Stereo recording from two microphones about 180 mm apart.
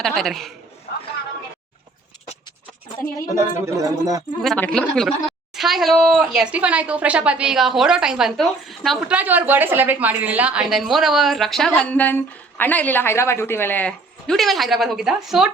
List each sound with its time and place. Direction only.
0.0 s a woman's voice: centre (ahead or behind)
0.9 s a sound: 60° left (ahead or behind)
3.3 s a man's voice: 20° right (ahead or behind)
4.4 s a woman's voice: 5° left (ahead or behind)